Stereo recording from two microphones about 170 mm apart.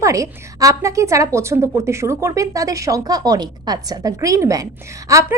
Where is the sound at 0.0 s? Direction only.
20° right (ahead or behind).